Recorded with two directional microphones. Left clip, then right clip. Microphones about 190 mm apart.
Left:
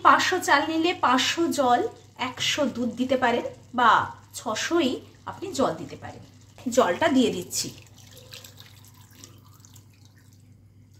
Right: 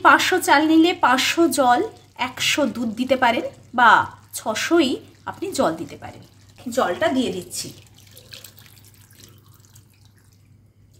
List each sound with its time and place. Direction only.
0.0 s a woman's voice: 40° right (ahead or behind)
6.7 s a woman's voice: 20° left (ahead or behind)